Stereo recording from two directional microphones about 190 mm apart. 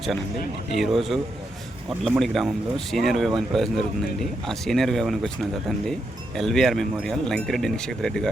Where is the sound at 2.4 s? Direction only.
Centre (ahead or behind).